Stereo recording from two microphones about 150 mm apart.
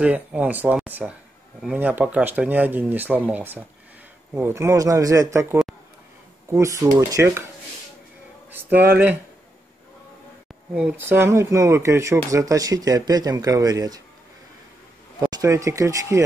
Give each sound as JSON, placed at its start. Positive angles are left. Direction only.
{"t": 0.0, "sound": "speech", "side_deg": -10}
{"t": 8.5, "sound": "speech", "side_deg": -10}
{"t": 10.7, "sound": "speech", "side_deg": -10}
{"t": 15.1, "sound": "speech", "side_deg": -25}